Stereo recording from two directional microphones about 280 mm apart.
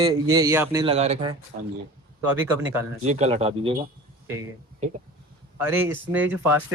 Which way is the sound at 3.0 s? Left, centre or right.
Right.